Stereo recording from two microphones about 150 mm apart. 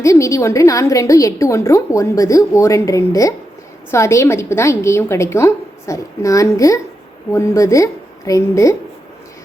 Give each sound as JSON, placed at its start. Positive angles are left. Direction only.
{"t": 0.0, "sound": "a woman's voice", "side_deg": 20}